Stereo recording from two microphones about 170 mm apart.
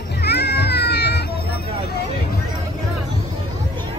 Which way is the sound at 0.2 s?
75° left (ahead or behind).